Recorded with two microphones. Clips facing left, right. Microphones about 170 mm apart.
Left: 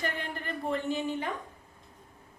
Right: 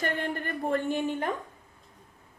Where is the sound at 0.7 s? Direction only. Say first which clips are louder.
Right 3 dB; 50° right (ahead or behind).